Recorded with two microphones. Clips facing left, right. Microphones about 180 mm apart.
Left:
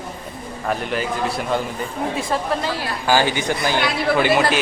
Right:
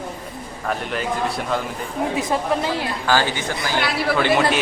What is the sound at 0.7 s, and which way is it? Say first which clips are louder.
Speech: left 1 dB; centre (ahead or behind).